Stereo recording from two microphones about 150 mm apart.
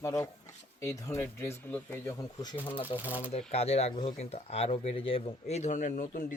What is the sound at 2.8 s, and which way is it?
Speech, 10° right (ahead or behind).